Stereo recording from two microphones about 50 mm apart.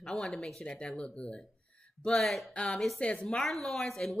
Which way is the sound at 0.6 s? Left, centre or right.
Left.